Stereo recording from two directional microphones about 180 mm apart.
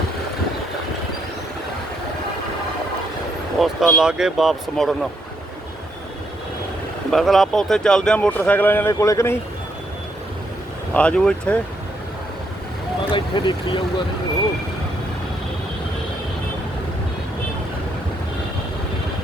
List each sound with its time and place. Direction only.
3.6 s speech: centre (ahead or behind)
7.1 s speech: centre (ahead or behind)
10.9 s speech: 5° left (ahead or behind)
13.1 s speech: 25° left (ahead or behind)